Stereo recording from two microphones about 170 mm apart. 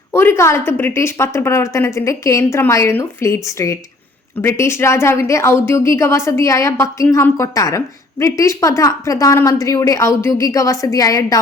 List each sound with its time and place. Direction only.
0.1 s a woman's voice: 15° left (ahead or behind)